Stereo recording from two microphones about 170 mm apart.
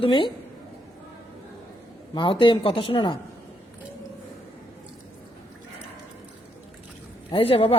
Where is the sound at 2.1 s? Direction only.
30° left (ahead or behind).